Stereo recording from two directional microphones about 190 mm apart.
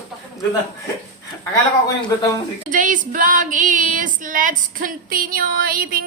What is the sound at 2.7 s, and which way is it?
Female singing, 45° right (ahead or behind).